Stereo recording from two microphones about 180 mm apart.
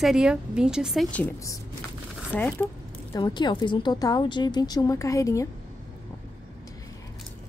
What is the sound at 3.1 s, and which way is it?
A woman's voice, 25° left (ahead or behind).